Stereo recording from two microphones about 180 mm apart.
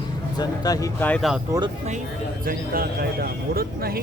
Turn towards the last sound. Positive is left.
turn(degrees=-55)  # may be behind; listen again after turning